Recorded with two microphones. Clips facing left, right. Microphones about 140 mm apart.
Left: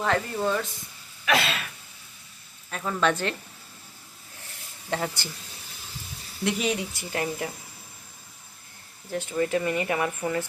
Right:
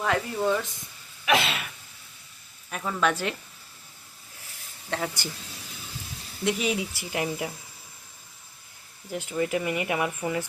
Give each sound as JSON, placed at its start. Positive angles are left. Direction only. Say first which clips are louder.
{"t": 0.0, "sound": "speech", "louder": "even", "side_deg": -5}
{"t": 1.2, "sound": "a sound", "louder": "right 1 dB", "side_deg": -15}
{"t": 2.6, "sound": "speech", "louder": "left 1 dB", "side_deg": -5}
{"t": 4.9, "sound": "speech", "louder": "left 1 dB", "side_deg": 5}
{"t": 6.4, "sound": "speech", "louder": "even", "side_deg": 0}
{"t": 7.1, "sound": "speech", "louder": "even", "side_deg": -15}
{"t": 9.3, "sound": "speech", "louder": "left 1 dB", "side_deg": -10}